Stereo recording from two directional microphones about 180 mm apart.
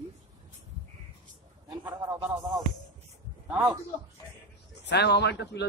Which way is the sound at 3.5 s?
10° right (ahead or behind).